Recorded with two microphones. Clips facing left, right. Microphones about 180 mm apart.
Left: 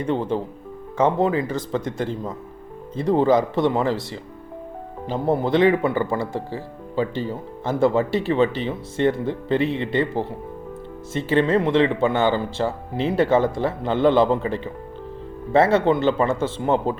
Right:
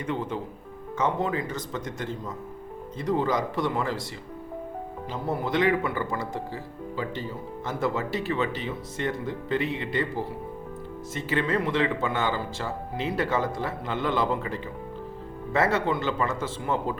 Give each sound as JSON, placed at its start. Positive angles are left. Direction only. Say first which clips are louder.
{"t": 0.0, "sound": "speech", "louder": "left 7 dB", "side_deg": 30}
{"t": 5.0, "sound": "speech", "louder": "left 9 dB", "side_deg": 30}